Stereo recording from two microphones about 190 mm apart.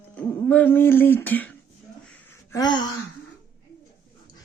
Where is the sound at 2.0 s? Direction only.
10° left (ahead or behind).